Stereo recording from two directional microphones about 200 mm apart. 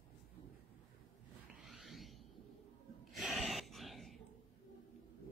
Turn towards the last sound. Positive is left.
turn(degrees=0)  # may be behind; listen again after turning